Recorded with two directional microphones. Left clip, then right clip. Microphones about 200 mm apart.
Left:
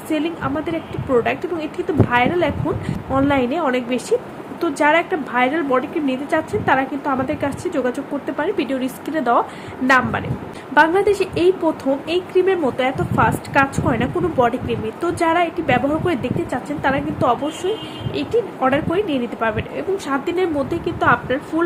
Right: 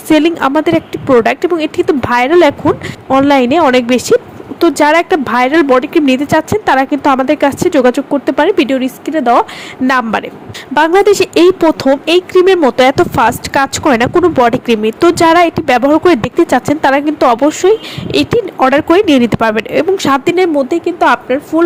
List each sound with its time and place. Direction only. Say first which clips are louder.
0.1 s speech: right 13 dB; 45° right (ahead or behind); by 9.4 s 30° right (ahead or behind)
9.8 s speech: right 4 dB; 45° right (ahead or behind)